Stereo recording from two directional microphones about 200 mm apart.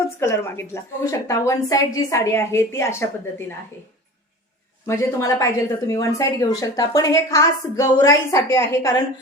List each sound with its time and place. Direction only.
0.2 s speech: 15° left (ahead or behind)
4.9 s speech: 15° left (ahead or behind)